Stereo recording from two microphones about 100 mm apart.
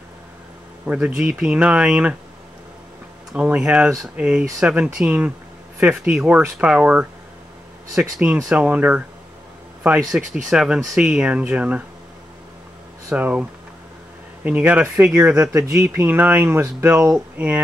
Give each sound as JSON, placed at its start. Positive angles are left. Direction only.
{"t": 0.8, "sound": "speech", "side_deg": -10}
{"t": 3.3, "sound": "speech", "side_deg": -15}
{"t": 13.1, "sound": "speech", "side_deg": -10}
{"t": 15.5, "sound": "speech", "side_deg": -30}
{"t": 16.9, "sound": "speech", "side_deg": -10}